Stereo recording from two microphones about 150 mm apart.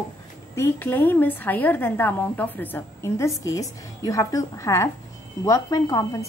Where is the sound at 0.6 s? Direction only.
15° left (ahead or behind).